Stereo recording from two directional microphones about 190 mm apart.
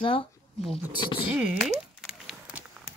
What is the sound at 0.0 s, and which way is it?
Speech, 30° left (ahead or behind).